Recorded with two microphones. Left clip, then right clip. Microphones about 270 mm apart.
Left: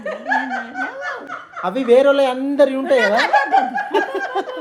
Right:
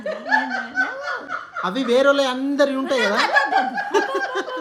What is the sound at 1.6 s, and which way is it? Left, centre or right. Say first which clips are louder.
A woman's voice: left 5 dB; centre.